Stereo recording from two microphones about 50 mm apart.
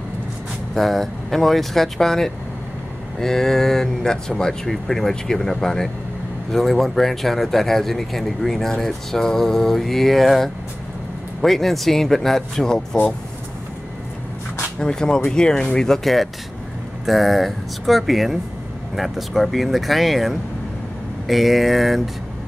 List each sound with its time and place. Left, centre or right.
0.7 s speech: centre
14.8 s speech: centre